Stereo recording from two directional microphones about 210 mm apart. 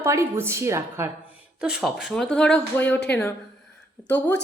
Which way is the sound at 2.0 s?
5° left (ahead or behind).